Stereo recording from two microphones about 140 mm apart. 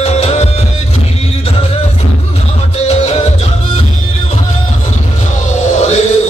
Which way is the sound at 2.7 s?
50° left (ahead or behind).